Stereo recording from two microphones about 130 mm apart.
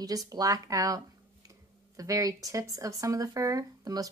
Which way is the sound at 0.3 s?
30° right (ahead or behind).